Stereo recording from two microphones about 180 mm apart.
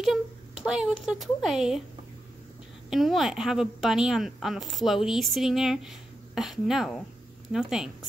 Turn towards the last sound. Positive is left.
turn(degrees=-5)  # may be behind; listen again after turning